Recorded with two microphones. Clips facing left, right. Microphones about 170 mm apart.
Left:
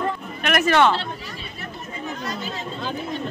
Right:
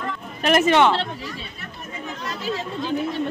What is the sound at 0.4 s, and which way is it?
Speech, 25° right (ahead or behind).